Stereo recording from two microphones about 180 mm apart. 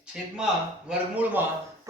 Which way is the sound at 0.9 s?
10° right (ahead or behind).